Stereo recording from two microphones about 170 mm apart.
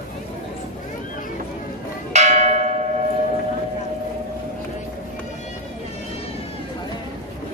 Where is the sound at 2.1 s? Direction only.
45° right (ahead or behind).